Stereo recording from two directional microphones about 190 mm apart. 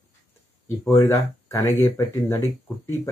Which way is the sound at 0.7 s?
15° left (ahead or behind).